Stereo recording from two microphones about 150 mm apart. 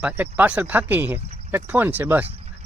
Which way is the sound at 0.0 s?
10° right (ahead or behind).